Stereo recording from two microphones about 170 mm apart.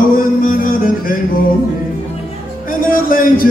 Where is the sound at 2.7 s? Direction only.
55° left (ahead or behind).